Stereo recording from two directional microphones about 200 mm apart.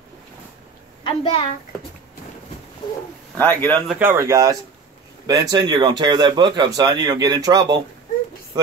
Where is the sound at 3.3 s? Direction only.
10° left (ahead or behind).